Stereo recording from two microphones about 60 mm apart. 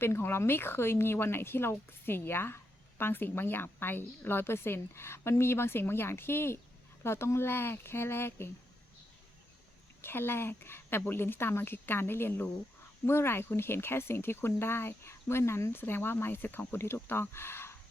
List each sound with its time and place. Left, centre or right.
0.0 s speech: left
10.0 s speech: left